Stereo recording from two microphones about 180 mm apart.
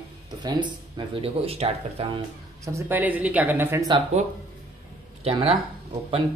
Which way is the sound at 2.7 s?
10° right (ahead or behind).